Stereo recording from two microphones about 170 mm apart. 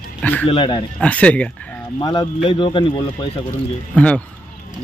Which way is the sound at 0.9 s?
10° left (ahead or behind).